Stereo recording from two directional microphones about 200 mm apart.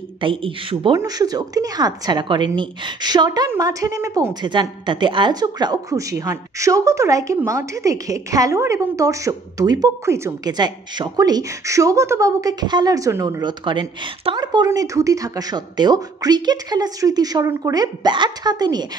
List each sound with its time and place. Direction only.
0.2 s a woman's voice: 25° right (ahead or behind)